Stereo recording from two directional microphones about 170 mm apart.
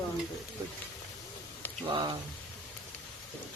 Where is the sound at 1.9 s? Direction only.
25° right (ahead or behind).